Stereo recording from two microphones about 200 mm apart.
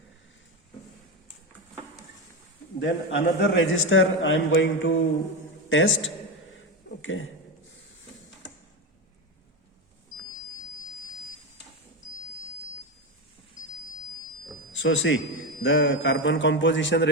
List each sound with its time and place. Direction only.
2.8 s a man's voice: 65° left (ahead or behind)
14.8 s a man's voice: 70° left (ahead or behind)